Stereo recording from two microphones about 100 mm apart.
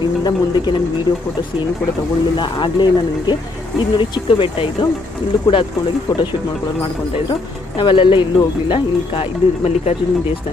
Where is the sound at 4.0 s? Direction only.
60° left (ahead or behind).